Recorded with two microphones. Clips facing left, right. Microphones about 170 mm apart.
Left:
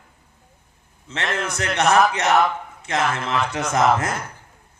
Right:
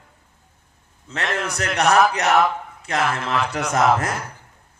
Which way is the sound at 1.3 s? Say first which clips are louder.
Even; 35° right (ahead or behind).